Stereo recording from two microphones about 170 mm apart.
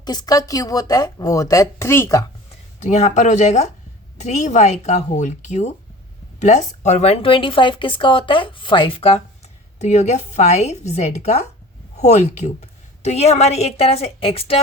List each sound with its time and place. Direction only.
0.0 s speech: 25° left (ahead or behind)
2.8 s a woman's voice: 45° left (ahead or behind)